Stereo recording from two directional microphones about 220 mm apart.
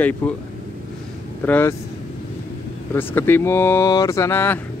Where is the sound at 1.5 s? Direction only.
10° left (ahead or behind).